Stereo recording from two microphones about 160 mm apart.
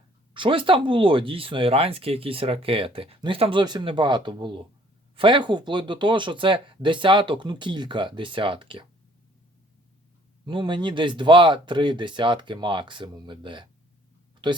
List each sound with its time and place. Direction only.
0.3 s speech: 30° right (ahead or behind)
10.4 s speech: 30° right (ahead or behind)